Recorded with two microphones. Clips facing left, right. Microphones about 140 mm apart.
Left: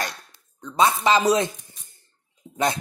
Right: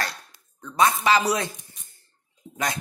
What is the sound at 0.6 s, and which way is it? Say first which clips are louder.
Speech: left 1 dB; 20° left (ahead or behind).